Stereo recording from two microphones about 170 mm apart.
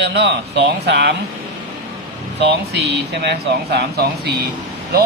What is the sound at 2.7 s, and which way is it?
Speech, 75° right (ahead or behind).